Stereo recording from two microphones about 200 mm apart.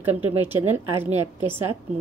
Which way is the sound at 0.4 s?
10° right (ahead or behind).